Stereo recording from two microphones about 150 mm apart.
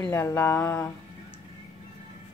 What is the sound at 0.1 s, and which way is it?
Speech, 15° left (ahead or behind).